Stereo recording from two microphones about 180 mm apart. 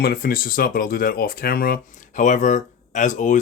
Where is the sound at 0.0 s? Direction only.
55° left (ahead or behind).